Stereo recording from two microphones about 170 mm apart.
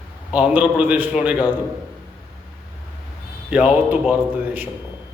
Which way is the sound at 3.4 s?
5° right (ahead or behind).